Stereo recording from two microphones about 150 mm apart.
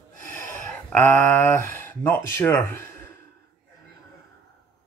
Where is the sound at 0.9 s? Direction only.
15° left (ahead or behind).